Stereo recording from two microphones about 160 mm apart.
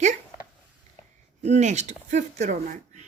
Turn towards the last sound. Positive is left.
turn(degrees=-50)  # may be behind; listen again after turning